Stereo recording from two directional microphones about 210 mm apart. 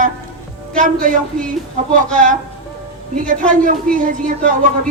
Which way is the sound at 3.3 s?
40° right (ahead or behind).